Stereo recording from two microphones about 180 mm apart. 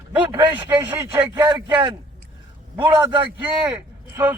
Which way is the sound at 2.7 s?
15° right (ahead or behind).